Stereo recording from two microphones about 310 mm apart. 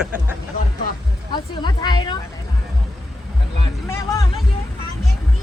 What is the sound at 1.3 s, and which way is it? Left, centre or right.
Speech, centre.